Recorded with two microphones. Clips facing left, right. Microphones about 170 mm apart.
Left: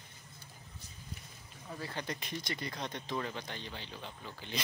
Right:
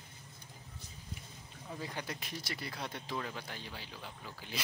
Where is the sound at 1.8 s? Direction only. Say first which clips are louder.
Left 2 dB; 10° right (ahead or behind).